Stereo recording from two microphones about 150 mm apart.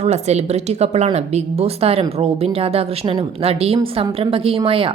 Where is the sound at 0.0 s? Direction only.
45° right (ahead or behind).